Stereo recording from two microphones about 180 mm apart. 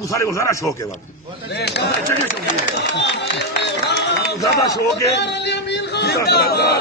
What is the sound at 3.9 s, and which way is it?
Run, 70° left (ahead or behind).